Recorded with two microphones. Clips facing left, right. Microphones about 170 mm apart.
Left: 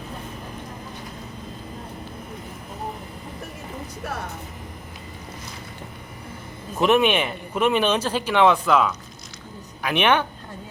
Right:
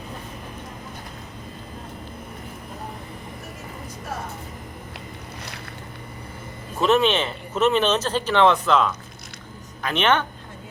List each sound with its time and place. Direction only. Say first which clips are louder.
6.7 s speech: left 1 dB; 15° left (ahead or behind)